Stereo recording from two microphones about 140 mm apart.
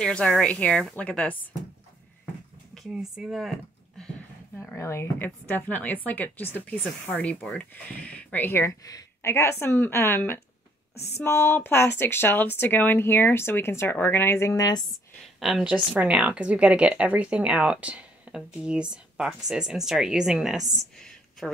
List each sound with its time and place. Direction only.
0.0 s speech: 5° left (ahead or behind)
2.7 s speech: centre (ahead or behind)
4.7 s speech: 20° left (ahead or behind)
15.4 s speech: 5° right (ahead or behind)